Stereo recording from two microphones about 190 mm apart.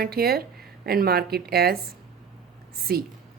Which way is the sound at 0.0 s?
55° right (ahead or behind).